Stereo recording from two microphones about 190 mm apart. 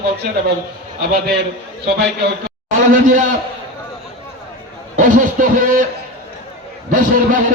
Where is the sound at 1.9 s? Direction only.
55° right (ahead or behind).